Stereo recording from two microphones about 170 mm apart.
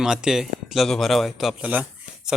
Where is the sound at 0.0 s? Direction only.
5° right (ahead or behind).